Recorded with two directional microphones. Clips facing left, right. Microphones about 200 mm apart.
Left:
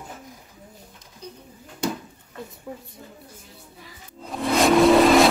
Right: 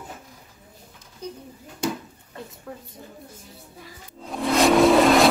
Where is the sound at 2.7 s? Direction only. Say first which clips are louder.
Left 2 dB; 10° left (ahead or behind).